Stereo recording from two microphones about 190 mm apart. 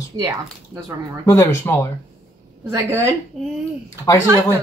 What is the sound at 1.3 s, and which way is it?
Speech, 15° left (ahead or behind).